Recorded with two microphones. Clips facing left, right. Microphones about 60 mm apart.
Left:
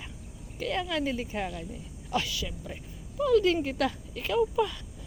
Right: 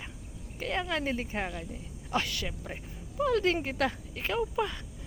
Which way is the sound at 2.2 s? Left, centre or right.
Right.